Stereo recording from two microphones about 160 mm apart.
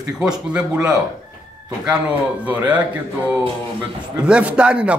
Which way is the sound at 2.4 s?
10° right (ahead or behind).